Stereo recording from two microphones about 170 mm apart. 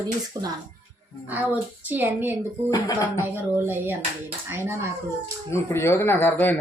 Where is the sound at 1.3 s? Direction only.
10° right (ahead or behind).